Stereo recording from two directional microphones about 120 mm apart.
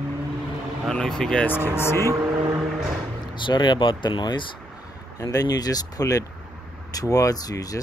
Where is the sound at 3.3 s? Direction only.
40° left (ahead or behind).